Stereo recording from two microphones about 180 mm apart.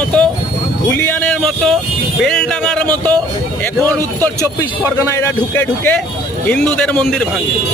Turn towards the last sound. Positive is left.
turn(degrees=5)  # may be behind; listen again after turning